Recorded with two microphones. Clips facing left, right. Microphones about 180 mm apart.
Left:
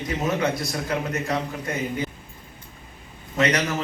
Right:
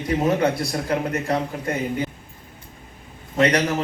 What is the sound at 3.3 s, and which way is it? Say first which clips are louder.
Speech: right 3 dB; 35° right (ahead or behind).